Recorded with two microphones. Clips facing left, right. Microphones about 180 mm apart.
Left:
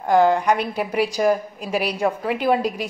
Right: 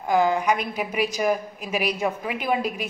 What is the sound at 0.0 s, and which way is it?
A woman's voice, 10° right (ahead or behind).